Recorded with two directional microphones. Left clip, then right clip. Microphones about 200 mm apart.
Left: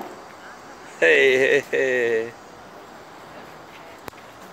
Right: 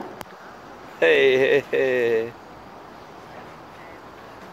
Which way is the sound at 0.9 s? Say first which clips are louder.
Left 1 dB; 10° left (ahead or behind).